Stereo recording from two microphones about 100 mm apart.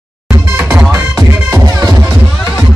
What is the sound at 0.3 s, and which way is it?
Music, 25° right (ahead or behind).